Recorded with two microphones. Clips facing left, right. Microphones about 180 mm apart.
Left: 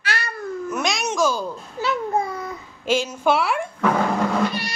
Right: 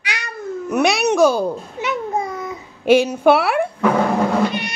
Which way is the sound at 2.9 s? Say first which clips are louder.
Right 7 dB; 65° right (ahead or behind).